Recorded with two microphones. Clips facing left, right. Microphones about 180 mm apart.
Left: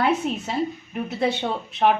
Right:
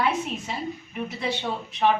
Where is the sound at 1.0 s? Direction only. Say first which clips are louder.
Left 5 dB; 55° left (ahead or behind).